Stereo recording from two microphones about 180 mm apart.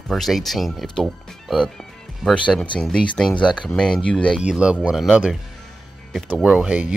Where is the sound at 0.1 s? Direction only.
Centre (ahead or behind).